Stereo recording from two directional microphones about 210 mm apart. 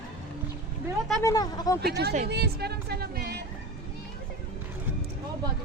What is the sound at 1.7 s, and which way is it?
Speech, 50° right (ahead or behind).